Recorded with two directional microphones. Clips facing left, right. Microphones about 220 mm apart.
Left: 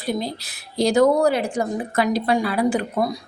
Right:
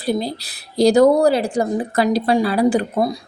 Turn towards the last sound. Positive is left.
turn(degrees=-30)  # may be behind; listen again after turning